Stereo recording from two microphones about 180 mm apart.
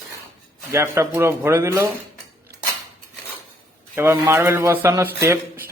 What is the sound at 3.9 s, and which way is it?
Speech, 15° right (ahead or behind).